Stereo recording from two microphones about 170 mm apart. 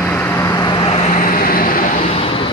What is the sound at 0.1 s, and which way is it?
Vehicle, 15° left (ahead or behind).